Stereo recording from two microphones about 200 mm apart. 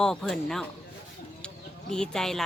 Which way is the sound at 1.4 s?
5° left (ahead or behind).